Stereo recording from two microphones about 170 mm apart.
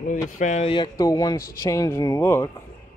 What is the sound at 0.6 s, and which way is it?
Speech, 25° left (ahead or behind).